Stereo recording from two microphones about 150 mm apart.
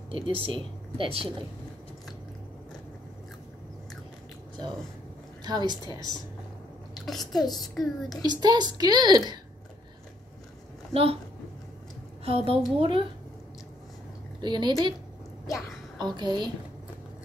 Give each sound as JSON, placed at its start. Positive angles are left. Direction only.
{"t": 0.1, "sound": "speech", "side_deg": -35}
{"t": 5.4, "sound": "a woman's voice", "side_deg": -30}
{"t": 7.1, "sound": "a woman's voice", "side_deg": 0}
{"t": 7.4, "sound": "a child's voice", "side_deg": 25}
{"t": 7.7, "sound": "a woman's voice", "side_deg": 0}
{"t": 8.2, "sound": "a woman's voice", "side_deg": -25}
{"t": 10.9, "sound": "speech", "side_deg": -40}
{"t": 12.3, "sound": "speech", "side_deg": -40}
{"t": 14.4, "sound": "speech", "side_deg": -30}
{"t": 16.0, "sound": "a woman's voice", "side_deg": -30}